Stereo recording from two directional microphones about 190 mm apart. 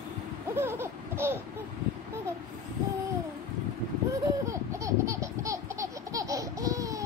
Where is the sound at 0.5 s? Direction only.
10° right (ahead or behind).